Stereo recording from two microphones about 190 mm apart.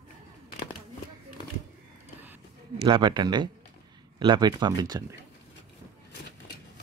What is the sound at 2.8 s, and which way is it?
Speech, 25° right (ahead or behind).